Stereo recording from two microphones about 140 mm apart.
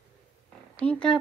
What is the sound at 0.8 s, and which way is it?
Speech, 5° left (ahead or behind).